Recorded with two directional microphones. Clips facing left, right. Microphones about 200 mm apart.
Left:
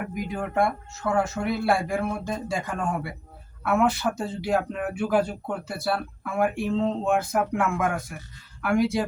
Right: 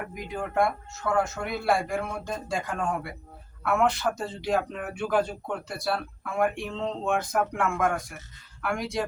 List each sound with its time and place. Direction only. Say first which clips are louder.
0.2 s speech: left 1 dB; centre (ahead or behind)